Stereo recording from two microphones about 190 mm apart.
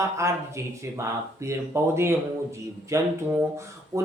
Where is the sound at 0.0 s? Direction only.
15° right (ahead or behind).